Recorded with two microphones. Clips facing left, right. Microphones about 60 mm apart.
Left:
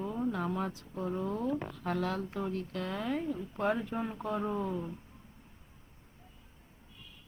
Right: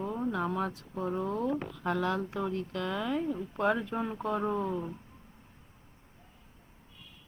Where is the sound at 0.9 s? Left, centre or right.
Right.